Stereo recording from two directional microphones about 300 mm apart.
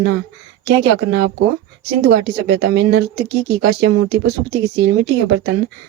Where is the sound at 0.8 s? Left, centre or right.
Right.